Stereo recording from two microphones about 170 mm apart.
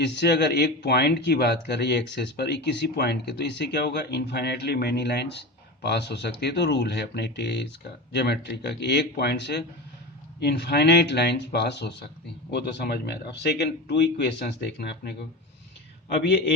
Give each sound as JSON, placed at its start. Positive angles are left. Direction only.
{"t": 0.0, "sound": "speech", "side_deg": 90}
{"t": 8.1, "sound": "speech", "side_deg": 80}